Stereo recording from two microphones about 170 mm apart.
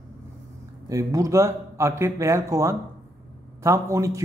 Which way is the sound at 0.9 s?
20° right (ahead or behind).